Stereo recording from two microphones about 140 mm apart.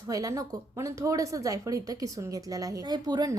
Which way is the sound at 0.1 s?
25° right (ahead or behind).